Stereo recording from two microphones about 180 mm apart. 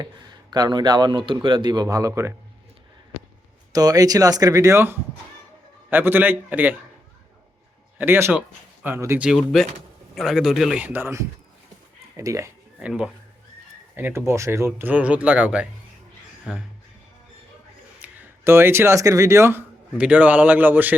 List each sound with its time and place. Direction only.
0.5 s a man's voice: 20° right (ahead or behind)
3.7 s a man's voice: 20° right (ahead or behind)
7.9 s a man's voice: 10° right (ahead or behind)
12.8 s a man's voice: 5° right (ahead or behind)
18.0 s speech: 10° right (ahead or behind)